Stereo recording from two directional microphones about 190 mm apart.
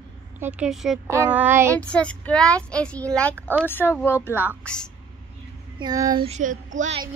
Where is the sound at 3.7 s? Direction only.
10° left (ahead or behind).